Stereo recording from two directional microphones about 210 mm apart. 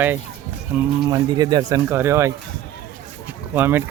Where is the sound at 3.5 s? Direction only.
10° right (ahead or behind).